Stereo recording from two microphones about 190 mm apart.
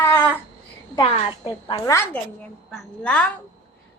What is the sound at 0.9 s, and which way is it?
A woman's voice, 25° left (ahead or behind).